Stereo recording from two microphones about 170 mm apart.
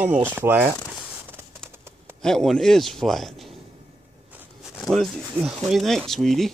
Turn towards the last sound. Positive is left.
turn(degrees=0)  # may be behind; listen again after turning